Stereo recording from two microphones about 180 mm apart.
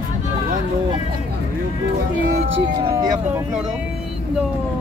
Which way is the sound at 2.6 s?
25° right (ahead or behind).